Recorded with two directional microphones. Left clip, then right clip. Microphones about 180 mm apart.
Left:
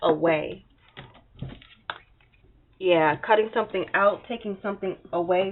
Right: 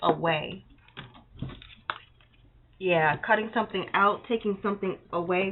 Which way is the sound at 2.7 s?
45° left (ahead or behind).